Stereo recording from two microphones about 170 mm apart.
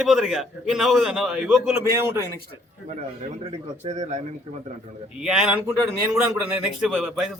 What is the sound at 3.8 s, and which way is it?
Speech, 45° right (ahead or behind).